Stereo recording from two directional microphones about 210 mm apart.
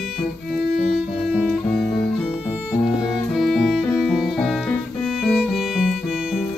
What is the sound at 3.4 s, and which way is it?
Music, centre (ahead or behind).